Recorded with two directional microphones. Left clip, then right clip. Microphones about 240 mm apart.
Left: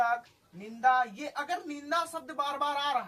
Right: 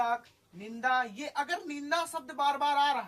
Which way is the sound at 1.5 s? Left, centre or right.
Right.